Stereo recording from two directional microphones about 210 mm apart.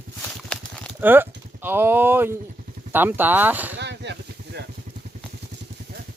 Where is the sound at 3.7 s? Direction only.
55° right (ahead or behind).